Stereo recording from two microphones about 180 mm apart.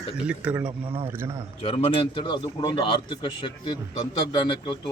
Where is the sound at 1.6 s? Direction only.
30° left (ahead or behind).